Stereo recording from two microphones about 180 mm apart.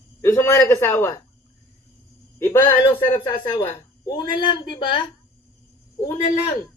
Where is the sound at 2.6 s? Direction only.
30° left (ahead or behind).